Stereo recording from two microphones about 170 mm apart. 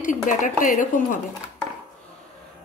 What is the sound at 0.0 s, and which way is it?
Speech, 50° left (ahead or behind).